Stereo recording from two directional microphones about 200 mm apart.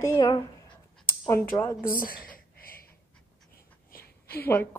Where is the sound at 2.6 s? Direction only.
45° left (ahead or behind).